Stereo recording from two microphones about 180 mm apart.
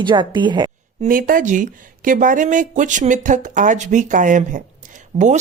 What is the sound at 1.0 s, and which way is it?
Speech, 50° right (ahead or behind).